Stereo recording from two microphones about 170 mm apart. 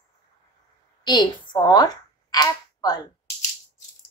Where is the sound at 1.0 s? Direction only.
25° left (ahead or behind).